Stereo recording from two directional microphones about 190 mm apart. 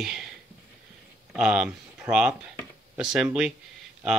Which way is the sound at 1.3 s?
5° right (ahead or behind).